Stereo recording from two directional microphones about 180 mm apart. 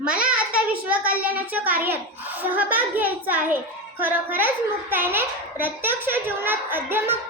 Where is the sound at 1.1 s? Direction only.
10° right (ahead or behind).